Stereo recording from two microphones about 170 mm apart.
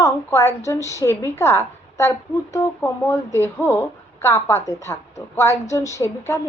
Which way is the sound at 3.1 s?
15° left (ahead or behind).